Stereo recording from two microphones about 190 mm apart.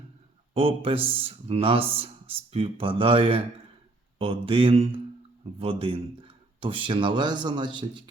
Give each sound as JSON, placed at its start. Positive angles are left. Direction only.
{"t": 0.5, "sound": "speech", "side_deg": -30}